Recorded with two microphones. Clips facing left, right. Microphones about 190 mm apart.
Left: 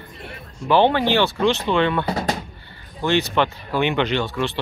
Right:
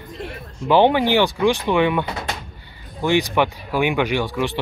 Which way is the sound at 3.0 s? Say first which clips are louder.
Right 1 dB; 15° right (ahead or behind).